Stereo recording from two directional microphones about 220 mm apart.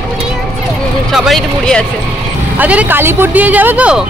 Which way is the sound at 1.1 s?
Centre (ahead or behind).